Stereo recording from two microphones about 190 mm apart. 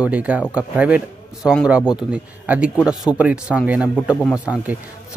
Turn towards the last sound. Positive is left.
turn(degrees=-5)  # may be behind; listen again after turning